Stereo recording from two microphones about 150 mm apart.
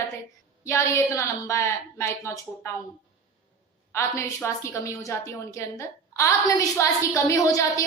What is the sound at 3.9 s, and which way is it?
A woman's voice, 20° left (ahead or behind).